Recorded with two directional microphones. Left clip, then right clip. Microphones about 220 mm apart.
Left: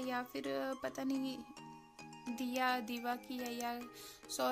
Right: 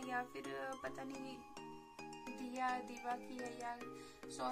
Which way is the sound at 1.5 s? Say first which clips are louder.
Right 1 dB; centre (ahead or behind).